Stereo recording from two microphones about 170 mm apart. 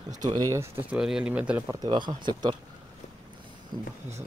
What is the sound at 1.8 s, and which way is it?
Speech, 25° right (ahead or behind).